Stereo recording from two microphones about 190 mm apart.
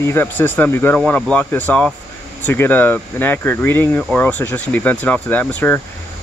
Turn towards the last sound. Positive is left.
turn(degrees=10)  # may be behind; listen again after turning